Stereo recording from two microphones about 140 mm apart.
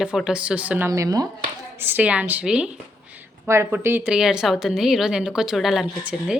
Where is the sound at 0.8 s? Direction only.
25° right (ahead or behind).